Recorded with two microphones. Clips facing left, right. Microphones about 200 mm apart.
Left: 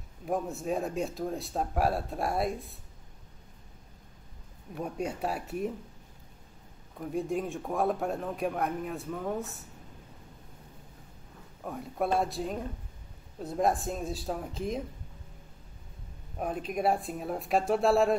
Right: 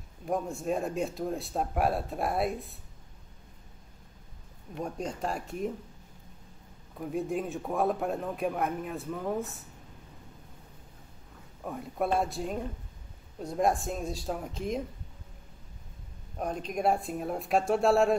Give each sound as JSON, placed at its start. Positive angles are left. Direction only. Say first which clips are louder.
{"t": 0.2, "sound": "a man's voice", "louder": "even", "side_deg": 0}
{"t": 4.8, "sound": "a man's voice", "louder": "left 1 dB", "side_deg": 10}
{"t": 7.0, "sound": "a man's voice", "louder": "even", "side_deg": 0}
{"t": 11.6, "sound": "a man's voice", "louder": "even", "side_deg": 0}
{"t": 16.3, "sound": "a man's voice", "louder": "even", "side_deg": 5}